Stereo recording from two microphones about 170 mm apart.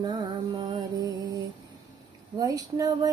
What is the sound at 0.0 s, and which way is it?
Music, 25° right (ahead or behind).